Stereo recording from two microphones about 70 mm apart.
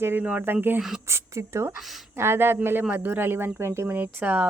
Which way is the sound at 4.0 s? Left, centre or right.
Right.